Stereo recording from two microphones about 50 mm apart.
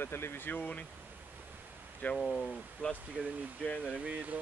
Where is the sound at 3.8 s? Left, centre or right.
Right.